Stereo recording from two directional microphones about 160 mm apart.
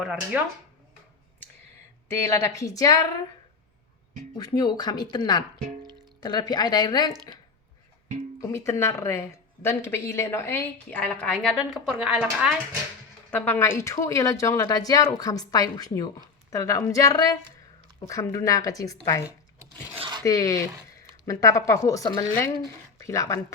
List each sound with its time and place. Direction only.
0.0 s speech: 5° right (ahead or behind)
2.0 s speech: 20° left (ahead or behind)
4.4 s speech: 25° left (ahead or behind)
8.4 s a woman's voice: 20° left (ahead or behind)
11.5 s speech: 5° right (ahead or behind)
13.3 s speech: 10° left (ahead or behind)
20.0 s filing: 30° right (ahead or behind)
20.2 s speech: 20° left (ahead or behind)